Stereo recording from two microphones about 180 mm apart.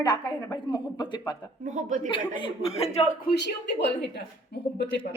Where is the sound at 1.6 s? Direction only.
45° right (ahead or behind).